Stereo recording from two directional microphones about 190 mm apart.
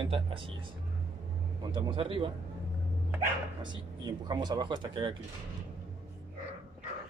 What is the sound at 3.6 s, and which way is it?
Speech, 20° right (ahead or behind).